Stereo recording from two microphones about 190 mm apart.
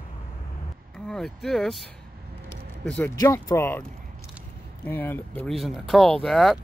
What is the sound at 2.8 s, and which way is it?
Speech, 5° left (ahead or behind).